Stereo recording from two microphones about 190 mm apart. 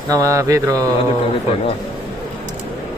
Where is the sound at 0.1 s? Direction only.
15° right (ahead or behind).